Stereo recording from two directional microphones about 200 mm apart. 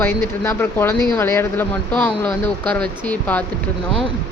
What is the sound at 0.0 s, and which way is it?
A woman's voice, 10° left (ahead or behind).